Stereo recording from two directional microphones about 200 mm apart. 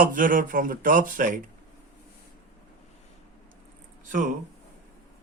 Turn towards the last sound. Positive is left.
turn(degrees=-40)  # may be behind; listen again after turning